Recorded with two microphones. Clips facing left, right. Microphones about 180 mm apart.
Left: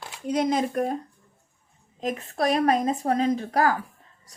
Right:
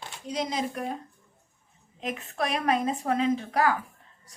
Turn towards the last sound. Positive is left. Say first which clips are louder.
# left 2 dB
turn(degrees=40)  # may be behind; listen again after turning